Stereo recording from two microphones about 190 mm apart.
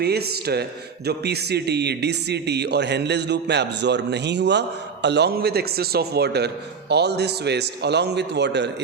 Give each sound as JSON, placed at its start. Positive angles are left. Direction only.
{"t": 0.0, "sound": "a man's voice", "side_deg": -55}